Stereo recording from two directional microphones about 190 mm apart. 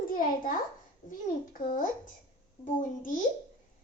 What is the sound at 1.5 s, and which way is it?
Speech, 45° left (ahead or behind).